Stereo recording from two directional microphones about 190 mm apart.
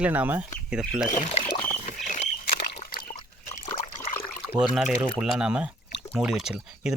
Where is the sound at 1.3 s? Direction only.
35° left (ahead or behind); by 3.6 s 50° left (ahead or behind).